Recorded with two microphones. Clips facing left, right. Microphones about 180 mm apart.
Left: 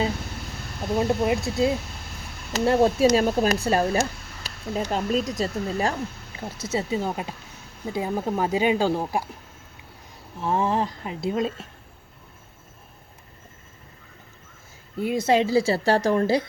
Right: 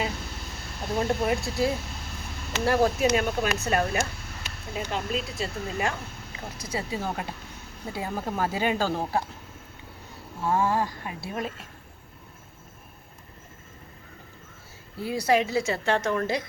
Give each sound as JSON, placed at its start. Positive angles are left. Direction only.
{"t": 0.9, "sound": "speech", "side_deg": 20}
{"t": 6.6, "sound": "speech", "side_deg": 25}
{"t": 10.4, "sound": "speech", "side_deg": 20}
{"t": 14.9, "sound": "speech", "side_deg": 20}